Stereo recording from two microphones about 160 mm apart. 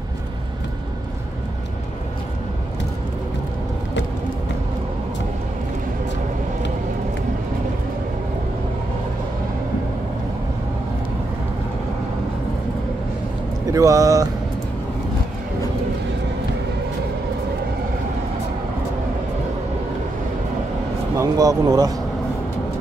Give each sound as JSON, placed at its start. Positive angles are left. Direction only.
{"t": 13.7, "sound": "speech", "side_deg": -20}
{"t": 21.2, "sound": "speech", "side_deg": -25}